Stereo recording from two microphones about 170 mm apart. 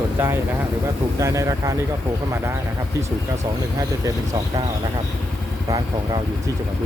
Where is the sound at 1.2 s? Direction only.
20° right (ahead or behind).